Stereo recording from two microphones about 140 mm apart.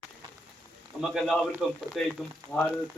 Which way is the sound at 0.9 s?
Centre (ahead or behind).